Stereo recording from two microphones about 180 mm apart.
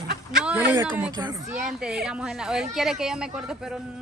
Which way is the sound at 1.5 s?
5° right (ahead or behind).